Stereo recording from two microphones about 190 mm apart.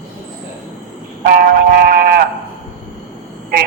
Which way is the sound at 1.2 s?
50° right (ahead or behind).